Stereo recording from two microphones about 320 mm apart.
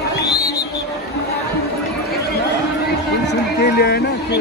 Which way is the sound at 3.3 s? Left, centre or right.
Left.